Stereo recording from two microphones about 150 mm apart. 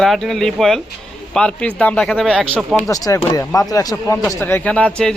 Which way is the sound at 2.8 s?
20° left (ahead or behind).